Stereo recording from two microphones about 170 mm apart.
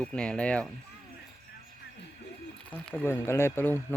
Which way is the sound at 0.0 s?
5° left (ahead or behind).